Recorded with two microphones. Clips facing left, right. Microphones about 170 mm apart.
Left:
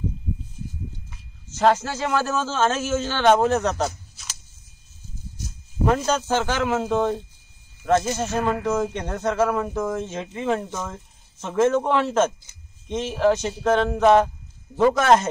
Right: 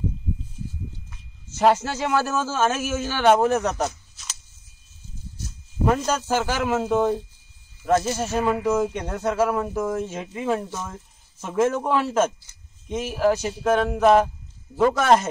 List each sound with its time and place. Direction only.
1.5 s speech: 15° right (ahead or behind)
6.0 s speech: 5° right (ahead or behind)
10.6 s speech: 15° left (ahead or behind)
11.6 s speech: 10° right (ahead or behind)